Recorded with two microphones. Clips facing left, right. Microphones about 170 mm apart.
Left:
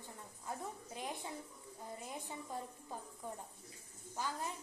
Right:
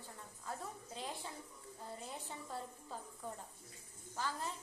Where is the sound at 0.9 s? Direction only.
15° left (ahead or behind).